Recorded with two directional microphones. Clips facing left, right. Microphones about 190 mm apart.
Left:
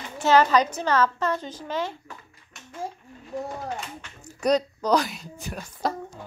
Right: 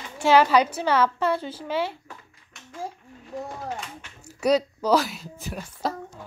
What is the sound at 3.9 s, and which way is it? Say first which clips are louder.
Speech: even; 5° right (ahead or behind).